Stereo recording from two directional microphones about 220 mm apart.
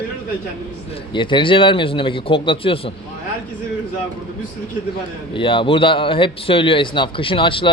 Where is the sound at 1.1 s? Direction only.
20° left (ahead or behind).